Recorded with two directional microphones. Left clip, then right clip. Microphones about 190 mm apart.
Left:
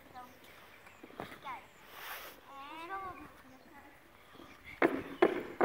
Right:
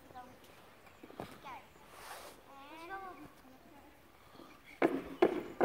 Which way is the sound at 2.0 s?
25° right (ahead or behind).